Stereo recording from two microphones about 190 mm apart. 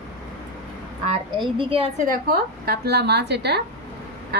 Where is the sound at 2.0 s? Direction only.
50° right (ahead or behind).